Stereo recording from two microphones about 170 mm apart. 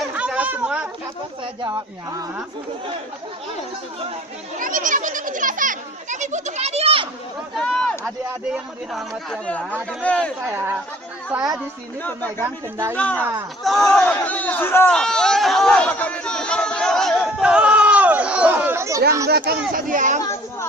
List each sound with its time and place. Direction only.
0.1 s chatter: 10° right (ahead or behind)
1.6 s speech: 20° right (ahead or behind)
4.6 s a child's voice: 50° right (ahead or behind); by 7.1 s 35° right (ahead or behind)
7.5 s speech: 5° left (ahead or behind)
12.0 s speech: 10° left (ahead or behind); by 19.0 s 15° right (ahead or behind)
19.3 s a child's voice: 70° right (ahead or behind); by 20.2 s 50° right (ahead or behind)